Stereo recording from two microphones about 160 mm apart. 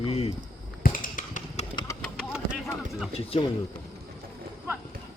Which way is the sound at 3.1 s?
35° left (ahead or behind).